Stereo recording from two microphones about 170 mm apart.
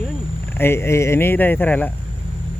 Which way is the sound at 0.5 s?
15° left (ahead or behind).